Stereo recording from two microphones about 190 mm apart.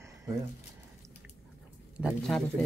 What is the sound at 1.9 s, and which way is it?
Speech, 5° right (ahead or behind).